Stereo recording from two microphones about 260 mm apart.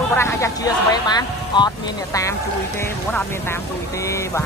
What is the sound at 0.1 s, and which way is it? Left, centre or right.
Speech, centre.